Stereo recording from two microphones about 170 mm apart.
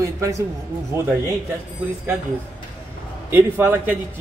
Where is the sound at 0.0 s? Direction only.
20° right (ahead or behind).